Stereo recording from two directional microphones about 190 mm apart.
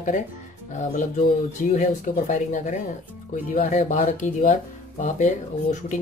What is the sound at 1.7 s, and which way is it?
Speech, 40° left (ahead or behind).